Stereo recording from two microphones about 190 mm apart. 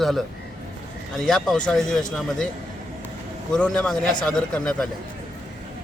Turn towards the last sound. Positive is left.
turn(degrees=5)  # may be behind; listen again after turning